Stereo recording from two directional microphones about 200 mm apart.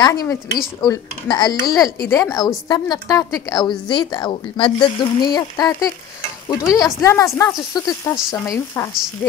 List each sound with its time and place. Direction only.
0.0 s a woman's voice: 15° left (ahead or behind)